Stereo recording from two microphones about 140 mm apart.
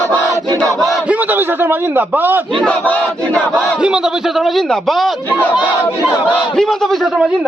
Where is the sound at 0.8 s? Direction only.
10° right (ahead or behind).